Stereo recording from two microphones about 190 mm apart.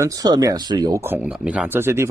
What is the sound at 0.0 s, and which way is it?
Speech, 20° right (ahead or behind).